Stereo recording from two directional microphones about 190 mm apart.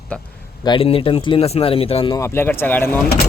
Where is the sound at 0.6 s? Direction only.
25° left (ahead or behind).